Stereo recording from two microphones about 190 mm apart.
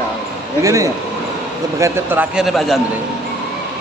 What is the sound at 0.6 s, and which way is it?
A man's voice, 15° right (ahead or behind).